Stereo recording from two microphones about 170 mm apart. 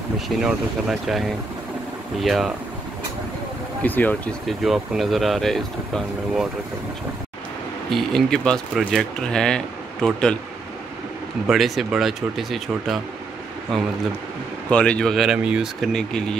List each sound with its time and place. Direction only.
0.4 s speech: 5° right (ahead or behind)
3.8 s speech: 10° left (ahead or behind)
7.9 s speech: centre (ahead or behind)
11.4 s speech: centre (ahead or behind)